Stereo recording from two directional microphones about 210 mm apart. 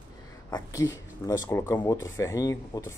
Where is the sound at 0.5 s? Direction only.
20° left (ahead or behind).